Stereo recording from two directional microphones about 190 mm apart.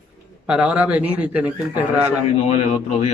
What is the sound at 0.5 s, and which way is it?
Speech, 5° right (ahead or behind).